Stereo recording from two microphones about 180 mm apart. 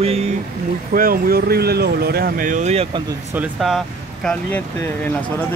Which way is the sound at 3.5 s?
Centre (ahead or behind).